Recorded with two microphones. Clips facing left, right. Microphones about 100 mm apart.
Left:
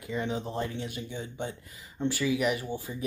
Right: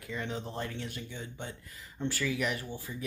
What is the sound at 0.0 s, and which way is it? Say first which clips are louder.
Speech: left 5 dB; 15° left (ahead or behind).